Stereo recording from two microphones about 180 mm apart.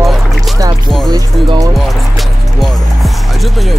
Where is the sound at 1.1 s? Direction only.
20° right (ahead or behind).